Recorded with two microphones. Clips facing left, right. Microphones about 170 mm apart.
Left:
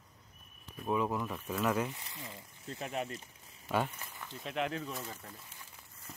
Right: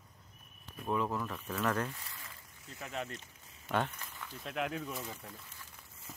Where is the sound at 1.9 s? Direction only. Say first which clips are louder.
Left 4 dB; 20° left (ahead or behind).